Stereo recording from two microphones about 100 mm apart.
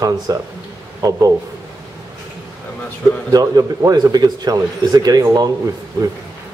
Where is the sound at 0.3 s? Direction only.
40° right (ahead or behind).